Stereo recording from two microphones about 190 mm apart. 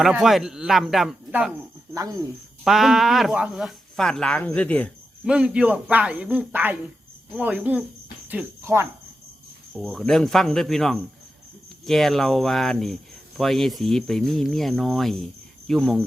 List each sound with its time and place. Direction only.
0.0 s cricket: centre (ahead or behind)
2.0 s speech: 20° right (ahead or behind)
2.6 s cricket: centre (ahead or behind)
5.2 s speech: 5° right (ahead or behind)
8.3 s cricket: 10° right (ahead or behind)
9.7 s cricket: centre (ahead or behind)